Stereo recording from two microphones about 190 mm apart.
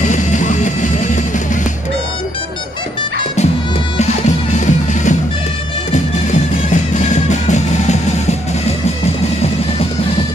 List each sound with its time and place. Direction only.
0.0 s music: 40° left (ahead or behind)
4.0 s music: 35° left (ahead or behind)